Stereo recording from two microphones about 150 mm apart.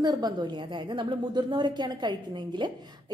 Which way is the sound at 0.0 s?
30° right (ahead or behind).